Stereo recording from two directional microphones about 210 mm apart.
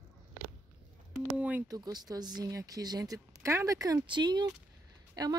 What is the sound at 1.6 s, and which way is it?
Speech, 20° right (ahead or behind).